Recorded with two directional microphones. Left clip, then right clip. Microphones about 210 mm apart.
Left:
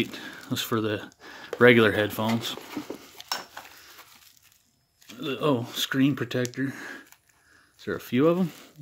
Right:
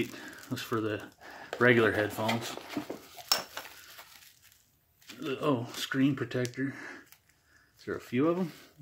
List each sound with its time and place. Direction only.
0.0 s a sound: 45° left (ahead or behind)
1.6 s speech: 50° left (ahead or behind)
3.3 s stir: 10° right (ahead or behind)
5.1 s speech: 45° left (ahead or behind)